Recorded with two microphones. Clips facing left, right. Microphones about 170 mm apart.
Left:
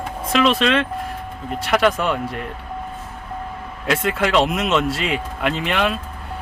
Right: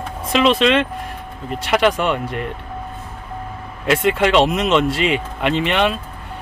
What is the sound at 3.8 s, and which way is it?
Speech, centre (ahead or behind).